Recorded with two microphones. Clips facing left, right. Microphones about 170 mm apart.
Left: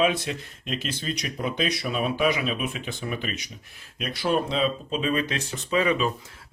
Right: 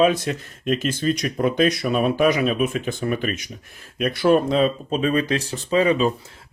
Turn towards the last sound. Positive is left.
turn(degrees=-35)  # may be behind; listen again after turning